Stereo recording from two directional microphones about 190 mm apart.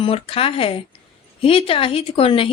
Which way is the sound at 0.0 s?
30° left (ahead or behind).